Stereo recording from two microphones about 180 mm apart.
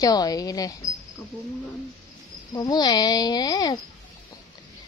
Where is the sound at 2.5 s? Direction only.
20° left (ahead or behind).